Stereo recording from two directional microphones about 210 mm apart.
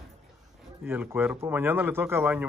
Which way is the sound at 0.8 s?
10° right (ahead or behind).